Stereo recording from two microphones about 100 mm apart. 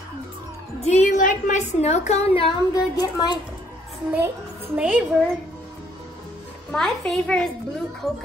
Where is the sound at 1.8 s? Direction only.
90° left.